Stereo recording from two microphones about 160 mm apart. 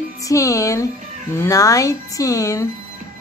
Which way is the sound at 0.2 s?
20° left (ahead or behind).